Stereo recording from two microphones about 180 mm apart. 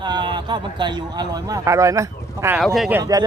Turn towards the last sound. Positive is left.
turn(degrees=-20)  # may be behind; listen again after turning